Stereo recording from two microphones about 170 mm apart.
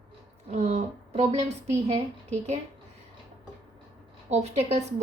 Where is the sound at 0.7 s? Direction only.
40° right (ahead or behind).